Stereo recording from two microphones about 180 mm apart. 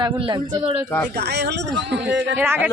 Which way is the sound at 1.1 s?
65° right (ahead or behind).